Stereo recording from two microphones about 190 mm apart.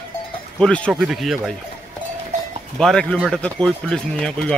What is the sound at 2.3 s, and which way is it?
Cowbell, 40° right (ahead or behind).